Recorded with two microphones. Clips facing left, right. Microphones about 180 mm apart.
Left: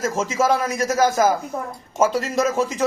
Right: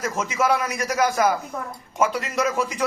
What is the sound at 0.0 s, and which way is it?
A man's voice, 25° left (ahead or behind).